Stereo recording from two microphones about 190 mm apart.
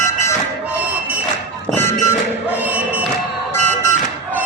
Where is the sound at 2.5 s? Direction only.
10° right (ahead or behind).